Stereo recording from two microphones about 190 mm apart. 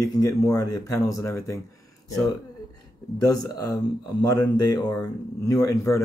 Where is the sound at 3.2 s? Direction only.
20° left (ahead or behind).